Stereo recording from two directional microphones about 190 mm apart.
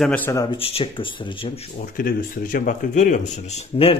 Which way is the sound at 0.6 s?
30° left (ahead or behind).